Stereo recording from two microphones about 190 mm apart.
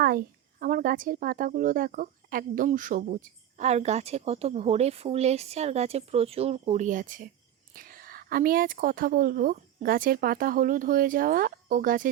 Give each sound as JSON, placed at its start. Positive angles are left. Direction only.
{"t": 0.0, "sound": "a woman's voice", "side_deg": -50}